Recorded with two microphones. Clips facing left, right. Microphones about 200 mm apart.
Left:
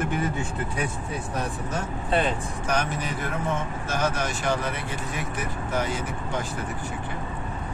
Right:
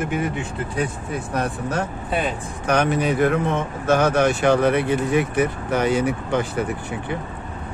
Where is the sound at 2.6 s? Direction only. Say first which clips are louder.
Right 9 dB; 65° right (ahead or behind).